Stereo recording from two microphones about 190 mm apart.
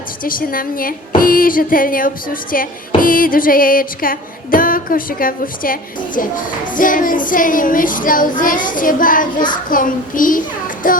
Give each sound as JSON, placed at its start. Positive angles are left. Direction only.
{"t": 0.3, "sound": "a woman's voice", "side_deg": 50}